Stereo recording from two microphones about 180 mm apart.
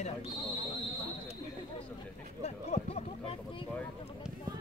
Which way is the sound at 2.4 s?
40° left (ahead or behind).